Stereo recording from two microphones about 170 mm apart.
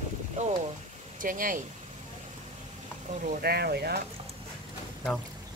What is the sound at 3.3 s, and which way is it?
Speech, 65° right (ahead or behind).